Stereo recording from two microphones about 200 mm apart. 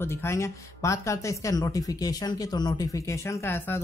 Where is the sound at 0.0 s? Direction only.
15° left (ahead or behind).